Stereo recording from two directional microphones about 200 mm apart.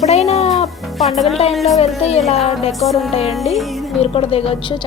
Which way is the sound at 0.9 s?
Centre (ahead or behind).